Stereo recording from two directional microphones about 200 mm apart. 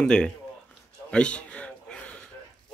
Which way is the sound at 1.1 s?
5° left (ahead or behind).